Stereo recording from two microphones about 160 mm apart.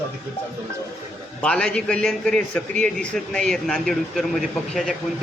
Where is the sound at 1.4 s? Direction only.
5° left (ahead or behind).